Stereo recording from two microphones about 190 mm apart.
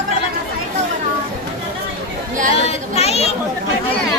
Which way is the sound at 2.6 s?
35° left (ahead or behind).